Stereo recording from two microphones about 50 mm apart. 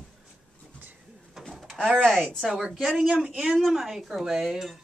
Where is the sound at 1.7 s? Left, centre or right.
Centre.